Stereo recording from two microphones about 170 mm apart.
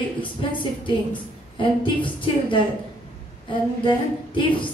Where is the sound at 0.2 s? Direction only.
30° left (ahead or behind).